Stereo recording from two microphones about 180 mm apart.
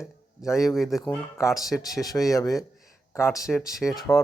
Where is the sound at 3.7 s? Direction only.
Centre (ahead or behind).